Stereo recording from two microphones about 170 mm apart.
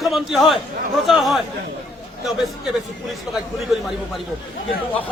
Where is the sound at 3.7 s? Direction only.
Centre (ahead or behind).